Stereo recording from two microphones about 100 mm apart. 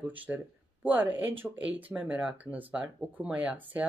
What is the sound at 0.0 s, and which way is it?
Speech, 15° right (ahead or behind).